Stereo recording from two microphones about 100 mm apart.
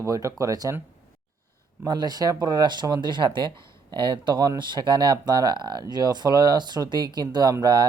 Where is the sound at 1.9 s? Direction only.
45° right (ahead or behind).